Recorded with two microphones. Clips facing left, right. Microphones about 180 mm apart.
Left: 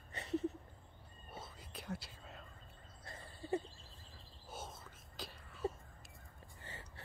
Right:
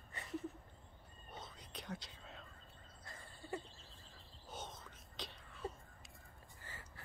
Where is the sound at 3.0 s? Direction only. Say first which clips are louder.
Left 5 dB; 25° left (ahead or behind).